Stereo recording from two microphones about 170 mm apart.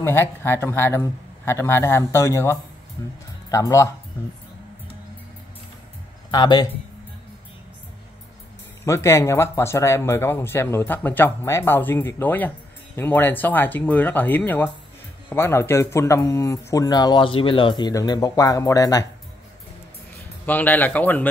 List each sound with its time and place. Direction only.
0.0 s speech: 15° left (ahead or behind)
6.3 s speech: 25° left (ahead or behind)
8.8 s speech: 15° left (ahead or behind)
20.4 s speech: 10° left (ahead or behind)